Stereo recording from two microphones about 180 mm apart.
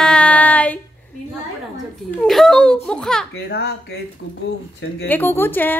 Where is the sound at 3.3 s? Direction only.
65° left (ahead or behind).